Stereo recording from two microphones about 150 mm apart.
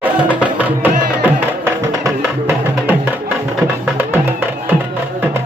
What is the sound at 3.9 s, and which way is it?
Music, 15° right (ahead or behind).